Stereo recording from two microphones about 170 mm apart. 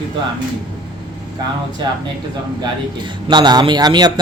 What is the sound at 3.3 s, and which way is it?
Speech, 25° right (ahead or behind).